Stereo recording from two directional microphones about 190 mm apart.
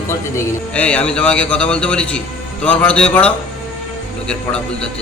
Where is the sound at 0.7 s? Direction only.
5° left (ahead or behind).